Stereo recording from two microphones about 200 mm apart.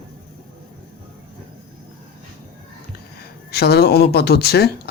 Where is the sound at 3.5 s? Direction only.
50° left (ahead or behind).